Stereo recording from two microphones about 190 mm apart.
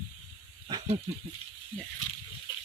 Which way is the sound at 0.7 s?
20° right (ahead or behind).